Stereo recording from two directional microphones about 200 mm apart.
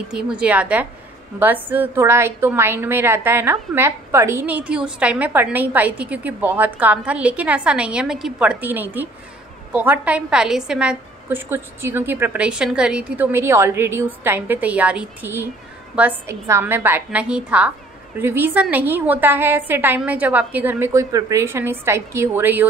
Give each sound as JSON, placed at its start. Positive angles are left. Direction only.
{"t": 0.1, "sound": "a woman's voice", "side_deg": -5}